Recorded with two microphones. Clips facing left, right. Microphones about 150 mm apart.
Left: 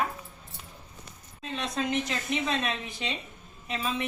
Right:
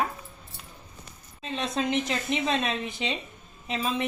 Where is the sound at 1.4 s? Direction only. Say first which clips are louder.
Right 2 dB; 25° right (ahead or behind).